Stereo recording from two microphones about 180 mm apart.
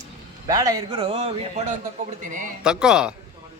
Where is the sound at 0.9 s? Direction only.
30° right (ahead or behind).